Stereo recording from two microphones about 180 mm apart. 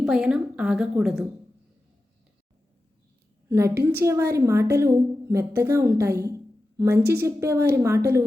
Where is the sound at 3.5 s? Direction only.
15° right (ahead or behind).